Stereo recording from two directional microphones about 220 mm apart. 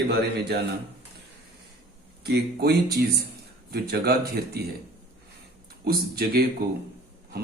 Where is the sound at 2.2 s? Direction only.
45° right (ahead or behind).